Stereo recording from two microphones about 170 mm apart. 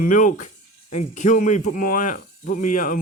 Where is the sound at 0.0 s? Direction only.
50° left (ahead or behind).